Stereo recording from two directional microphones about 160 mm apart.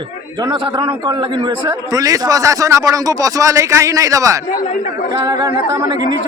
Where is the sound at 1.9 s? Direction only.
25° right (ahead or behind).